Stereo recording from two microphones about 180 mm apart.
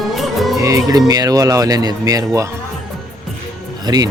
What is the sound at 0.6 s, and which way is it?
Speech, 15° right (ahead or behind).